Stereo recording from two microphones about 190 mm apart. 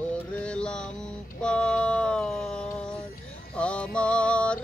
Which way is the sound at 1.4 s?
5° left (ahead or behind).